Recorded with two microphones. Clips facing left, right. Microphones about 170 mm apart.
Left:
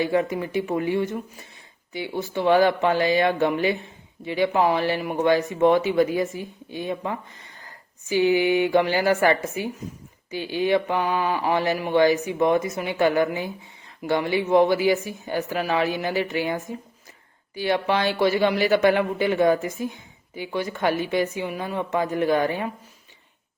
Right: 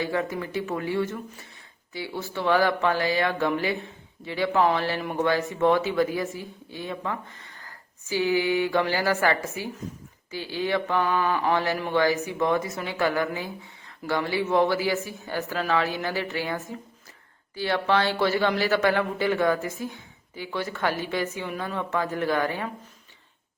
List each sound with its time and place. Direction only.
0.0 s speech: 20° left (ahead or behind)